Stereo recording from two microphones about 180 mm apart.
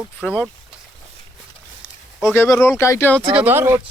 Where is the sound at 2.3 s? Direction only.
15° left (ahead or behind).